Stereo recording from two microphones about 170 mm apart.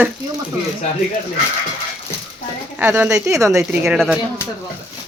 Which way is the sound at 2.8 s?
10° right (ahead or behind).